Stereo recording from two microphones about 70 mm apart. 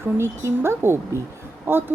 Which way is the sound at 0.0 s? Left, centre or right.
Right.